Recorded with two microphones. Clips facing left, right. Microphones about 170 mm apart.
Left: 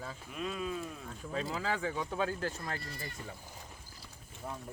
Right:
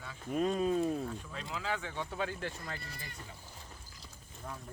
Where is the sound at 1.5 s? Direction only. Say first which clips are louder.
Left 1 dB; 40° left (ahead or behind).